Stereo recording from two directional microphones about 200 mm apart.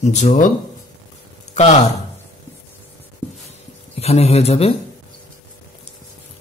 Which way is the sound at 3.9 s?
30° left (ahead or behind).